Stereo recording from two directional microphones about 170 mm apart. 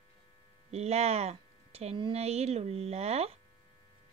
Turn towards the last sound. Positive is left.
turn(degrees=-40)  # may be behind; listen again after turning